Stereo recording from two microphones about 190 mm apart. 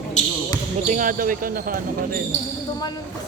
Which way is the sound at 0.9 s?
45° right (ahead or behind).